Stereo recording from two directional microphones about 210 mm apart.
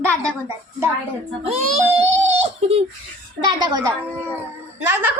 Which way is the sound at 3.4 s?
20° right (ahead or behind).